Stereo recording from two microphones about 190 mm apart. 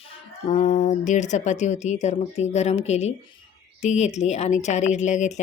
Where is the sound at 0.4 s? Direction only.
35° left (ahead or behind).